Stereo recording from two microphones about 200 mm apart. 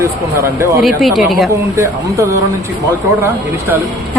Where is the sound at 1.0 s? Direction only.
Centre (ahead or behind).